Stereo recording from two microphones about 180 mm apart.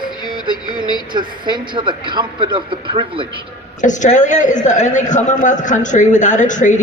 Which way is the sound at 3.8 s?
45° left (ahead or behind).